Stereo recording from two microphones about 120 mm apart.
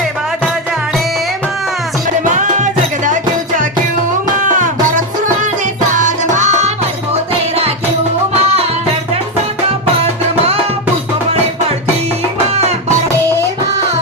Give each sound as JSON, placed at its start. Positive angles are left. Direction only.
{"t": 2.3, "sound": "music", "side_deg": -90}